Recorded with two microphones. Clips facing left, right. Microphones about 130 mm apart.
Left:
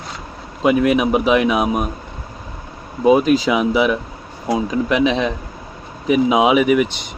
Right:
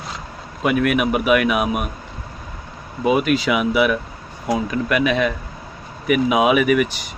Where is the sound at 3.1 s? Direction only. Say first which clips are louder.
Left 4 dB; 35° left (ahead or behind).